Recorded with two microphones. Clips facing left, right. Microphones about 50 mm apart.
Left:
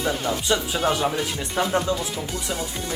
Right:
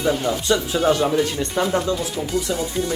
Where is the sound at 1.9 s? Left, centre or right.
Centre.